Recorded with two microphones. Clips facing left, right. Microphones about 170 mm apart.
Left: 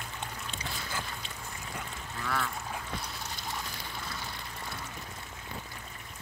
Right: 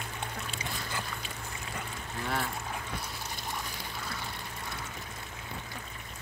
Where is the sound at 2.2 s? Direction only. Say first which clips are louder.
Even; 30° right (ahead or behind).